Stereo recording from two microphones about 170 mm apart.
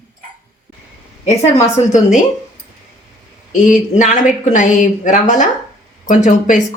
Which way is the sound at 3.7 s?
45° left (ahead or behind).